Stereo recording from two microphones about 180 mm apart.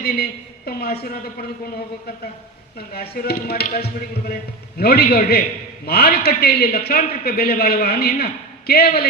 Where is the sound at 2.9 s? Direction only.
60° left (ahead or behind).